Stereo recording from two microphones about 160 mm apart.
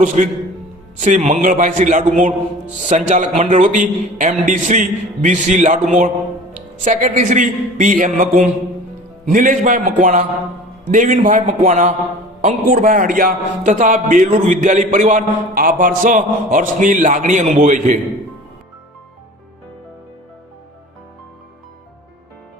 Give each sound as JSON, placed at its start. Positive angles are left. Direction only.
{"t": 0.0, "sound": "a man's voice", "side_deg": -50}